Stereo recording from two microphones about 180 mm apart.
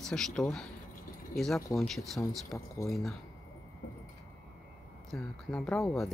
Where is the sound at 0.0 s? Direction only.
5° left (ahead or behind).